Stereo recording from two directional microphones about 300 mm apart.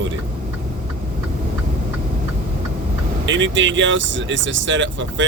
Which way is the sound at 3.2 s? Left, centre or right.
Right.